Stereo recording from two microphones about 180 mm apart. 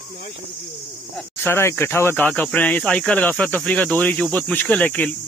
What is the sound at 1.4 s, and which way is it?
Speech, 15° left (ahead or behind).